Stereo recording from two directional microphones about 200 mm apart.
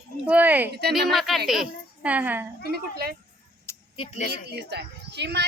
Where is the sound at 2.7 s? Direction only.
50° right (ahead or behind).